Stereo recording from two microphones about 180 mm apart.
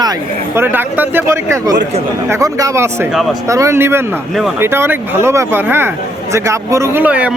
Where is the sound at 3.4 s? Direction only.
15° right (ahead or behind).